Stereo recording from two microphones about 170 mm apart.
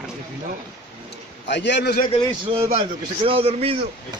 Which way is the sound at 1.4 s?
90° left.